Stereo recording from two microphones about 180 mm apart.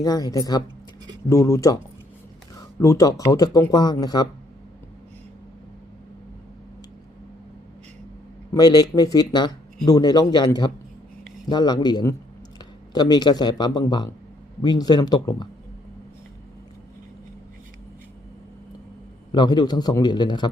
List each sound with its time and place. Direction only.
0.0 s speech: 20° left (ahead or behind)
2.8 s speech: 20° left (ahead or behind)
8.5 s speech: 20° left (ahead or behind)
19.3 s speech: 25° left (ahead or behind)